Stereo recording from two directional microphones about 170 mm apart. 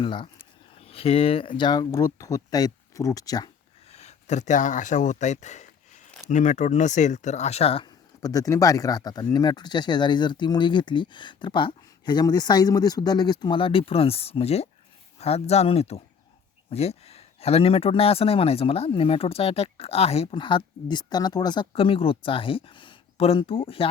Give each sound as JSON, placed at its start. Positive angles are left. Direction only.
{"t": 0.0, "sound": "speech", "side_deg": 30}
{"t": 3.9, "sound": "speech", "side_deg": 40}
{"t": 7.9, "sound": "speech", "side_deg": 20}